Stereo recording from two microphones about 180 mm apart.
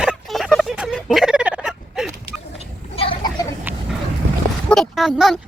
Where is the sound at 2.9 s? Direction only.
30° left (ahead or behind).